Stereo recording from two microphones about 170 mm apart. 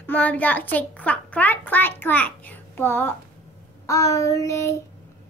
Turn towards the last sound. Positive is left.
turn(degrees=20)  # may be behind; listen again after turning